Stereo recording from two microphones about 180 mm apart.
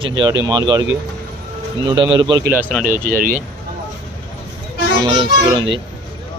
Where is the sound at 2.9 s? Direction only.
50° right (ahead or behind).